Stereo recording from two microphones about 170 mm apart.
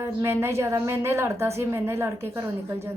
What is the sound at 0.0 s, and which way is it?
Speech, 15° right (ahead or behind).